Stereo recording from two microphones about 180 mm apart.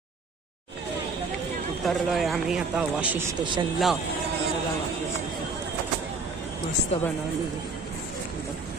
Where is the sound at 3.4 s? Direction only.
25° right (ahead or behind).